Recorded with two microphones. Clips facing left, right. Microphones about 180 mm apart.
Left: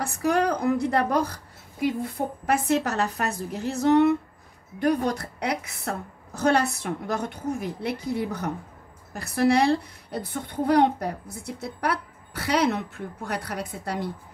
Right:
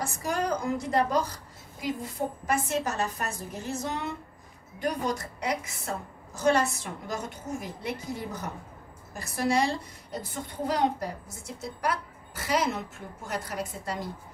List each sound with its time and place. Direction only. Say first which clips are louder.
0.0 s a woman's voice: left 7 dB; 60° left (ahead or behind)